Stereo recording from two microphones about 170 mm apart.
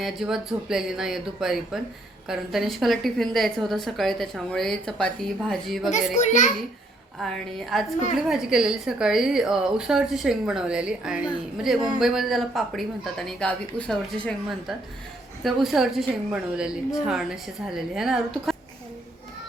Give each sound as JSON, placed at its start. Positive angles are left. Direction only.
{"t": 0.0, "sound": "a woman's voice", "side_deg": 0}
{"t": 6.1, "sound": "a child's voice", "side_deg": 45}
{"t": 7.2, "sound": "a woman's voice", "side_deg": 0}
{"t": 15.4, "sound": "a woman's voice", "side_deg": 0}